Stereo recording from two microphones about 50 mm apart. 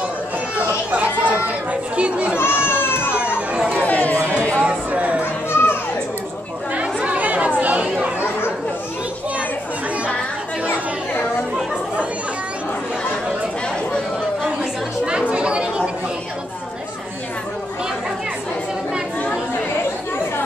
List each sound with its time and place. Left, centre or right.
0.6 s chatter: right
2.3 s a sound: left
3.3 s chatter: right
3.8 s chatter: left
4.6 s a sound: right
5.2 s children playing: left
6.7 s chatter: right
8.2 s chatter: left
14.4 s chatter: centre